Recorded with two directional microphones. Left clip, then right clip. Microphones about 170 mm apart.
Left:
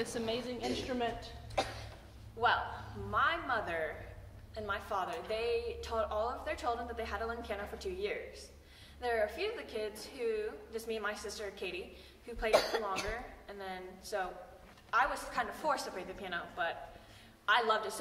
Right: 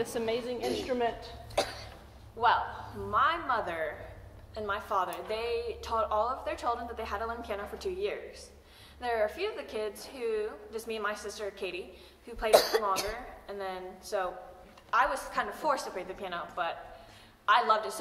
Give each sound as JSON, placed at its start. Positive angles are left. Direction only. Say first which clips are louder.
{"t": 0.0, "sound": "a woman's voice", "louder": "right 5 dB", "side_deg": 10}
{"t": 0.8, "sound": "a woman's voice", "louder": "right 7 dB", "side_deg": 20}
{"t": 1.6, "sound": "cough", "louder": "right 4 dB", "side_deg": -30}
{"t": 2.4, "sound": "a woman's voice", "louder": "right 5 dB", "side_deg": 5}
{"t": 12.4, "sound": "speech", "louder": "right 6 dB", "side_deg": -35}
{"t": 13.5, "sound": "a woman's voice", "louder": "right 8 dB", "side_deg": 0}